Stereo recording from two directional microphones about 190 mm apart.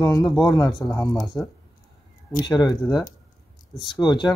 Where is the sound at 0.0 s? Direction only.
15° left (ahead or behind).